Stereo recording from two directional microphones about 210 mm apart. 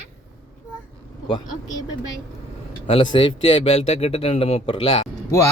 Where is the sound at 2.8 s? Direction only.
25° left (ahead or behind).